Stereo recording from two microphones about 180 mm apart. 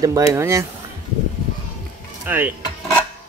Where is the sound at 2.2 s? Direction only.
10° right (ahead or behind).